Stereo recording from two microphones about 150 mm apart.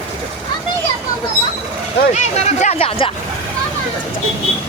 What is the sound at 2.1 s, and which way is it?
Speech, 50° left (ahead or behind).